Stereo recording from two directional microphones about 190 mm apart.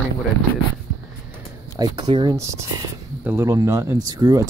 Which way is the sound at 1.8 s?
25° right (ahead or behind).